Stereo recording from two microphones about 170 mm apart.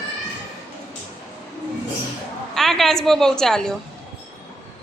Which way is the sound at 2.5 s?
Centre (ahead or behind).